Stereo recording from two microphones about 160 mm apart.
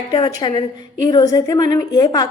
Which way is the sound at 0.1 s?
25° left (ahead or behind).